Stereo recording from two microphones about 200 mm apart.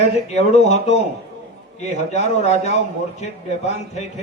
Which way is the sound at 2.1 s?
35° left (ahead or behind).